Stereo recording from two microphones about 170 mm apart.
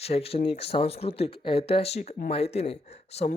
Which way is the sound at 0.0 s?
35° left (ahead or behind).